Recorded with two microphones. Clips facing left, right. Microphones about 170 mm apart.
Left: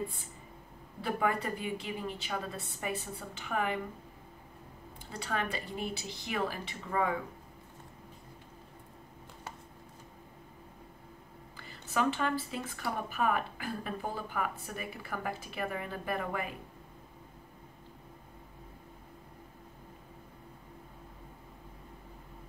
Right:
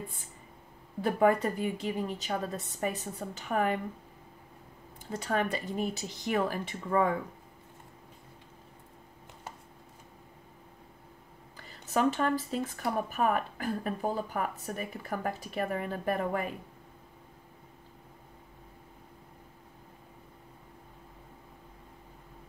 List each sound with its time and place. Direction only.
1.0 s a woman's voice: 45° right (ahead or behind)
5.1 s a woman's voice: 45° right (ahead or behind)
11.9 s a woman's voice: 45° right (ahead or behind)